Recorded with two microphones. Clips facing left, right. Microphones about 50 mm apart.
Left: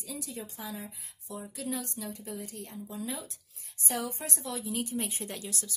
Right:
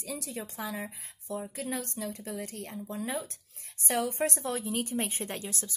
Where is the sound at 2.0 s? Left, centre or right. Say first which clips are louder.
Right 3 dB; right.